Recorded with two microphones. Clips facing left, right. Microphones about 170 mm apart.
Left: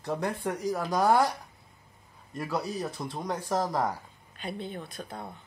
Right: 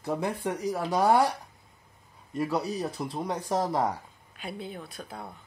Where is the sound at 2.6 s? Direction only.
10° right (ahead or behind).